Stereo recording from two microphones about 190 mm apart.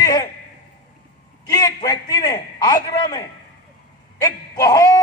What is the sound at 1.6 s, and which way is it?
A man's voice, 20° left (ahead or behind).